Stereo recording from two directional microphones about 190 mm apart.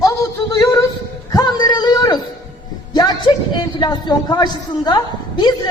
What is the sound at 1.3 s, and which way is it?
Speech, 20° left (ahead or behind).